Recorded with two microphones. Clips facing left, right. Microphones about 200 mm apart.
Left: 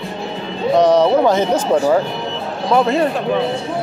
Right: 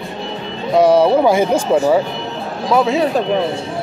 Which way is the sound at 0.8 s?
10° right (ahead or behind).